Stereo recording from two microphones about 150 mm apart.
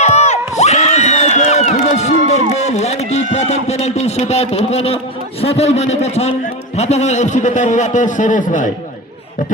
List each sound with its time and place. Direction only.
0.0 s crowd: 50° left (ahead or behind)
5.4 s a man's voice: 40° left (ahead or behind)